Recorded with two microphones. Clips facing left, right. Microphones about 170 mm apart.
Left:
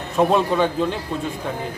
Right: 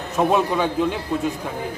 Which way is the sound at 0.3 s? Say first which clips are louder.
Left 1 dB; 10° right (ahead or behind).